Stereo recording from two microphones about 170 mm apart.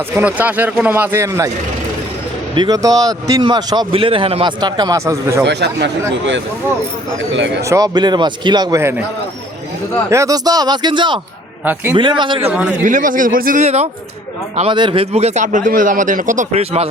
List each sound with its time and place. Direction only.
0.2 s speech: 10° right (ahead or behind)
2.6 s a man's voice: 20° right (ahead or behind)
5.5 s speech: 80° right
7.3 s speech: 90° right
7.6 s a man's voice: 20° right (ahead or behind)
8.8 s speech: 15° right (ahead or behind)
10.1 s a man's voice: 20° right (ahead or behind)
11.6 s speech: 10° right (ahead or behind)
12.2 s a man's voice: 30° right (ahead or behind)
12.5 s speech: 10° right (ahead or behind)
12.8 s speech: 50° right (ahead or behind)
13.7 s a man's voice: 40° right (ahead or behind)